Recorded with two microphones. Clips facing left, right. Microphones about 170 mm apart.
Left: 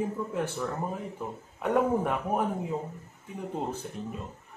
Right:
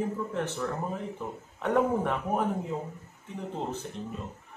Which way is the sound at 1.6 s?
5° left (ahead or behind).